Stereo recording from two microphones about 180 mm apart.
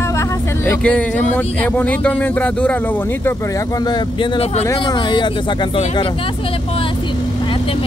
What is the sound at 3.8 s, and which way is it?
Speech, 25° left (ahead or behind).